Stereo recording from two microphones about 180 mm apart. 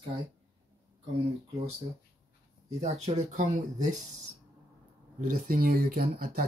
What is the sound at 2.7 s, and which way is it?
Speech, 40° right (ahead or behind).